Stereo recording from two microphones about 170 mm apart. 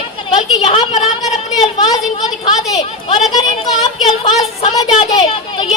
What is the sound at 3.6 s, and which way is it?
Speech, 25° left (ahead or behind).